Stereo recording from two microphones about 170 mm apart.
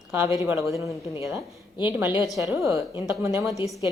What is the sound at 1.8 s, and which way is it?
A woman's voice, 10° right (ahead or behind).